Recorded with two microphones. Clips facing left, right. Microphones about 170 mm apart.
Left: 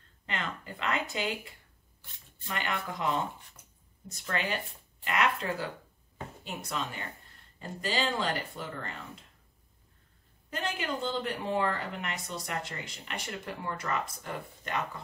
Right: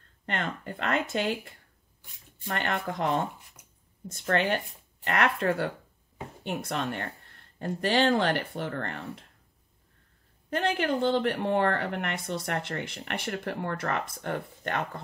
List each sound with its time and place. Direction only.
0.3 s speech: 55° right (ahead or behind)
3.3 s speech: 10° right (ahead or behind)
4.1 s speech: 55° right (ahead or behind)
10.5 s speech: 60° right (ahead or behind)